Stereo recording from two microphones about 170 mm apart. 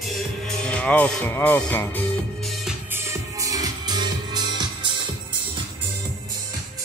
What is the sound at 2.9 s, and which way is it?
Music, 15° right (ahead or behind).